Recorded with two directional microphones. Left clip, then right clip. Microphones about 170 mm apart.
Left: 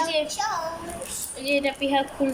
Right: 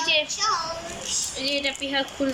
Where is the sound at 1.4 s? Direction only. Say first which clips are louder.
Left 4 dB; 10° left (ahead or behind).